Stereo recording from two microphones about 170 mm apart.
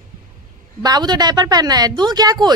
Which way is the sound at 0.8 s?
25° right (ahead or behind).